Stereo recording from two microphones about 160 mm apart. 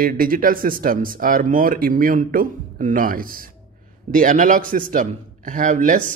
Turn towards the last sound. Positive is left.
turn(degrees=-55)  # may be behind; listen again after turning